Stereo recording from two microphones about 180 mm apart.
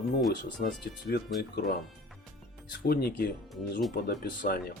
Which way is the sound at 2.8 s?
60° left (ahead or behind).